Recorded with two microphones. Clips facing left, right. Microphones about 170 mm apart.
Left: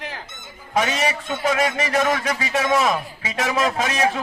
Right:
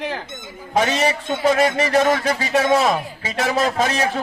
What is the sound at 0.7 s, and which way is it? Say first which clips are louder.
A man's voice: right 3 dB; 30° right (ahead or behind).